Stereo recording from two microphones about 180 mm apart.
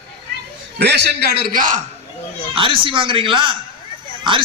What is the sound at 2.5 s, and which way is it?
A man's voice, 30° right (ahead or behind).